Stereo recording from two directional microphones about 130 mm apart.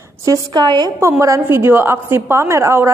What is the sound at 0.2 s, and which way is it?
A woman's voice, 30° right (ahead or behind).